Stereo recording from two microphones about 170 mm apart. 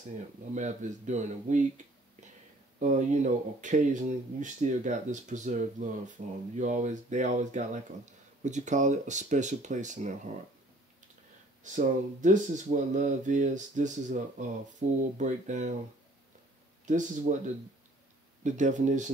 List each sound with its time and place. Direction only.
0.6 s speech: 45° right (ahead or behind)
2.8 s speech: 45° right (ahead or behind)
11.6 s speech: 45° right (ahead or behind)
16.8 s speech: 45° right (ahead or behind)
18.4 s speech: 45° right (ahead or behind)